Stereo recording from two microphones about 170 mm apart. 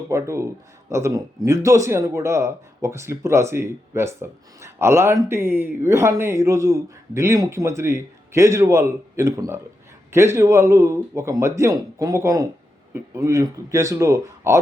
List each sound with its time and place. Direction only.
0.1 s speech: 15° right (ahead or behind)